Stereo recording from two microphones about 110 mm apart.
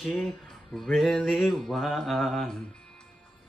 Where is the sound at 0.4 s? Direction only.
Centre (ahead or behind).